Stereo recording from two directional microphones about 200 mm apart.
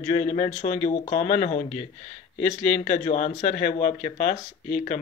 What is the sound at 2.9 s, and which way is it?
Speech, 35° left (ahead or behind).